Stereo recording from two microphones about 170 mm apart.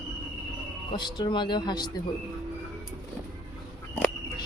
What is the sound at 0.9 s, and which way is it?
Speech, 25° left (ahead or behind).